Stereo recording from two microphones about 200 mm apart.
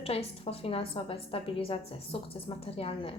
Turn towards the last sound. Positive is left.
turn(degrees=25)  # may be behind; listen again after turning